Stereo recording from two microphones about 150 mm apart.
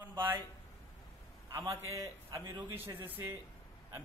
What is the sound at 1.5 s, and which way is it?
A man's voice, 20° right (ahead or behind).